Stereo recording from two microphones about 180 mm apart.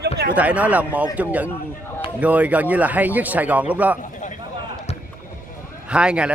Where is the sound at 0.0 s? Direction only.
65° right (ahead or behind).